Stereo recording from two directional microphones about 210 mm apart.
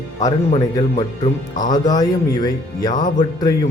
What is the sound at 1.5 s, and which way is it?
Speech, 20° left (ahead or behind).